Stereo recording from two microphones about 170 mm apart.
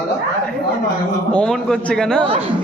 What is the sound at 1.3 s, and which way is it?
Speech, 5° left (ahead or behind).